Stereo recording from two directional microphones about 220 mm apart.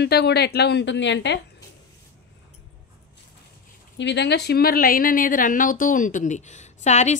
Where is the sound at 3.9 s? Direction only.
50° left (ahead or behind); by 7.2 s 30° left (ahead or behind).